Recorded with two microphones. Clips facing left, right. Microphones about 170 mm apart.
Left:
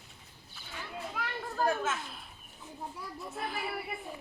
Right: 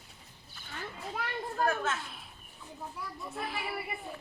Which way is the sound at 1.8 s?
Centre (ahead or behind).